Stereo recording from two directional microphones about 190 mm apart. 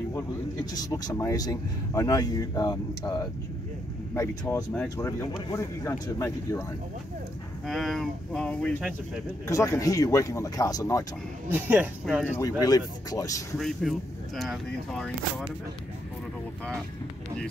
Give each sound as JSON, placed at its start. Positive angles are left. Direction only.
{"t": 0.7, "sound": "speech", "side_deg": 20}
{"t": 7.6, "sound": "speech", "side_deg": 0}
{"t": 9.5, "sound": "speech", "side_deg": 15}
{"t": 11.4, "sound": "speech", "side_deg": -10}
{"t": 12.4, "sound": "speech", "side_deg": 20}
{"t": 13.6, "sound": "speech", "side_deg": 0}